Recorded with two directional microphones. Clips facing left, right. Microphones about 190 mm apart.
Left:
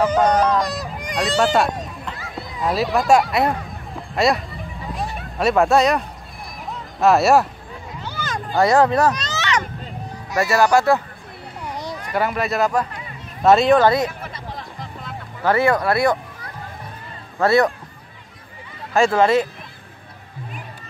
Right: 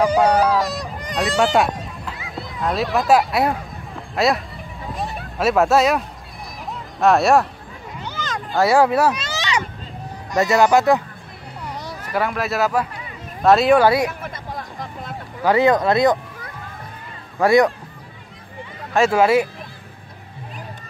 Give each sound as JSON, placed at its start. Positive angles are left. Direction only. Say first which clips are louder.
{"t": 0.0, "sound": "a sound", "louder": "right 1 dB", "side_deg": -10}
{"t": 2.0, "sound": "speech", "louder": "even", "side_deg": 0}
{"t": 8.5, "sound": "speech", "louder": "even", "side_deg": -10}
{"t": 12.0, "sound": "speech", "louder": "even", "side_deg": 0}
{"t": 14.2, "sound": "a sound", "louder": "right 2 dB", "side_deg": -50}
{"t": 15.4, "sound": "speech", "louder": "right 2 dB", "side_deg": -15}
{"t": 17.4, "sound": "speech", "louder": "right 2 dB", "side_deg": -15}
{"t": 18.9, "sound": "speech", "louder": "even", "side_deg": -5}